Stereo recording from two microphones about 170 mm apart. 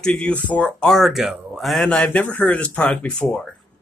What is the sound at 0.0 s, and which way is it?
A man's voice, 5° left (ahead or behind).